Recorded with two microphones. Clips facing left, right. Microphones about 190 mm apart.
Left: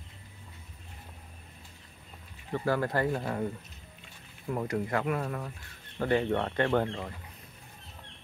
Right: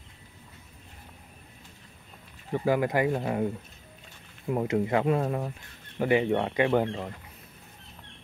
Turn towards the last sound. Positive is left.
turn(degrees=-10)  # may be behind; listen again after turning